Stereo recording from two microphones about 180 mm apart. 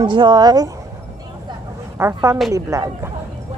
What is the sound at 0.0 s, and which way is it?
Speech, 25° right (ahead or behind).